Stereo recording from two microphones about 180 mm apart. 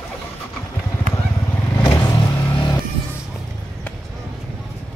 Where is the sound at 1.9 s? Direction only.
20° left (ahead or behind).